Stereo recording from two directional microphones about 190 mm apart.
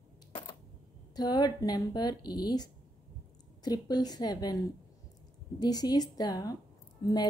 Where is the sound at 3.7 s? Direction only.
20° left (ahead or behind).